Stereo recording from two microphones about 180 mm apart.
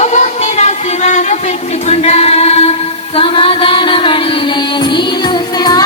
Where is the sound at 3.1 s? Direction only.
30° left (ahead or behind).